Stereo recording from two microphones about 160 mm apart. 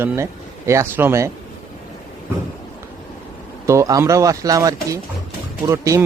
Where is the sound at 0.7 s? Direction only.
15° right (ahead or behind).